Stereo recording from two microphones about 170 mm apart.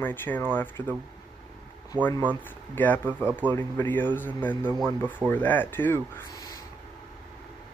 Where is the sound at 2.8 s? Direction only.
10° left (ahead or behind).